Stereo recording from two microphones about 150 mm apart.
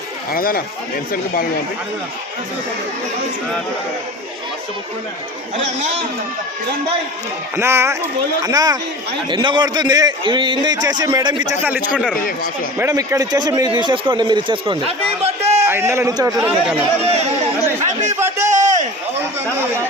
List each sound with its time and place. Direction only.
0.3 s speech: 75° left (ahead or behind)
7.5 s a man's voice: 15° right (ahead or behind)
12.8 s speech: 20° right (ahead or behind); by 15.5 s 40° right (ahead or behind)
15.6 s a man's voice: 15° right (ahead or behind)
16.4 s speech: 5° right (ahead or behind)
17.0 s chatter: 45° right (ahead or behind)
18.4 s a sound: 55° right (ahead or behind)